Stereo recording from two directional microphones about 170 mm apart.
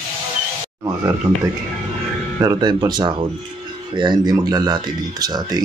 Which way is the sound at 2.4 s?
25° right (ahead or behind).